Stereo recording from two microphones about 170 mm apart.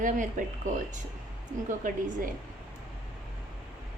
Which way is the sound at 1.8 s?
50° right (ahead or behind).